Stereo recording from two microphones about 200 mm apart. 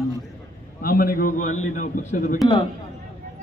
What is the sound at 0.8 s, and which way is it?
A man's voice, 45° left (ahead or behind).